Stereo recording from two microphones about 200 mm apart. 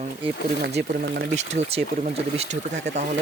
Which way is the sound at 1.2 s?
35° right (ahead or behind).